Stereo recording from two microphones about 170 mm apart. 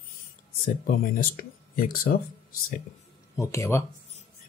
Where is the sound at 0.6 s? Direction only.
60° left (ahead or behind).